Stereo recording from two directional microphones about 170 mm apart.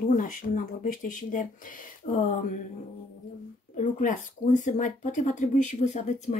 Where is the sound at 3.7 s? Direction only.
50° left (ahead or behind).